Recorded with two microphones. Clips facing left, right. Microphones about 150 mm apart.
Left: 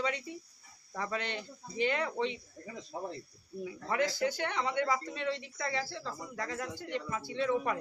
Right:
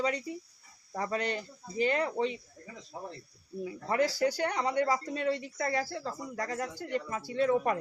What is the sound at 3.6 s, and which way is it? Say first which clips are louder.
Speech: right 3 dB; 40° right (ahead or behind).